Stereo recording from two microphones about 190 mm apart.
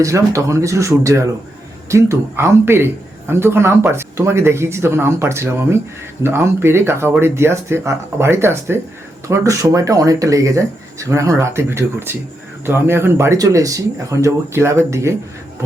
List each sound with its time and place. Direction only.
0.0 s a man's voice: 15° right (ahead or behind)